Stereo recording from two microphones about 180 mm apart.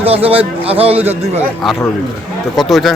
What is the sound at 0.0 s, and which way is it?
A man's voice, 35° right (ahead or behind).